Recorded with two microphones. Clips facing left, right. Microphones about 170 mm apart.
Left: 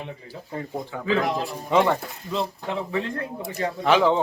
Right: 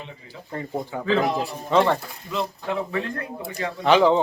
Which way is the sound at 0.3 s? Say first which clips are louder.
Right 4 dB; 5° left (ahead or behind).